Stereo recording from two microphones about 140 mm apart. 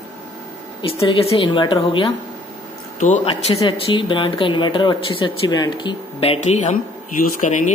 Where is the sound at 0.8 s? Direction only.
40° left (ahead or behind).